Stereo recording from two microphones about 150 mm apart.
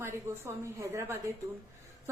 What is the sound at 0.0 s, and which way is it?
A woman's voice, 20° right (ahead or behind).